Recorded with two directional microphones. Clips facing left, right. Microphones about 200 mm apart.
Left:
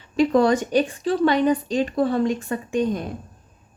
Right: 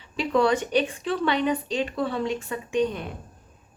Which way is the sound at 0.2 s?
40° left (ahead or behind).